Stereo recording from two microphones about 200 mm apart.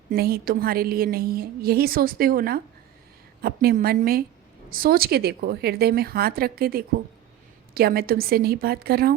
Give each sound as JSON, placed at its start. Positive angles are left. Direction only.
{"t": 0.1, "sound": "a woman's voice", "side_deg": -50}